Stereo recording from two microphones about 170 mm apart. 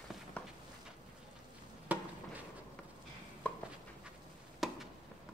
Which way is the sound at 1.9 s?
10° right (ahead or behind).